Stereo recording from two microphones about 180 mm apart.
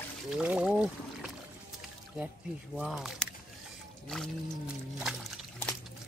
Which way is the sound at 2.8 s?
Centre (ahead or behind).